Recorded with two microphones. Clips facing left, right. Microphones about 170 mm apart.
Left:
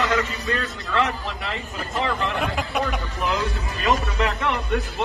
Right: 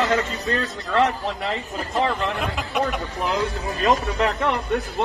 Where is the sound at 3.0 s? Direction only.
30° right (ahead or behind).